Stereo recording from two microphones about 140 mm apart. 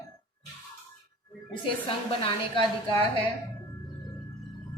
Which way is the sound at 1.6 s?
40° left (ahead or behind).